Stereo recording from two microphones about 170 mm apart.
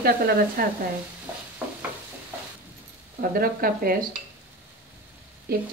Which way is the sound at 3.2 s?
60° right (ahead or behind).